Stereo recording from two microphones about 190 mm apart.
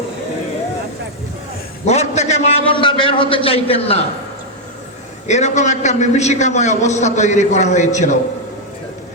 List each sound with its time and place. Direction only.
1.8 s a man's voice: 35° left (ahead or behind)
5.3 s a man's voice: 40° left (ahead or behind)